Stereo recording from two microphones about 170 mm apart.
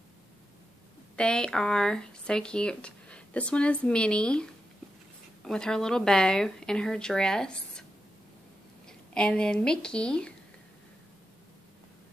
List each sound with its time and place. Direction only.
1.1 s speech: 5° left (ahead or behind)
8.8 s speech: 5° left (ahead or behind)